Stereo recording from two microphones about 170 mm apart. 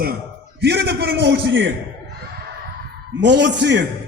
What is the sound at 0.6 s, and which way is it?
A man's voice, 75° right (ahead or behind).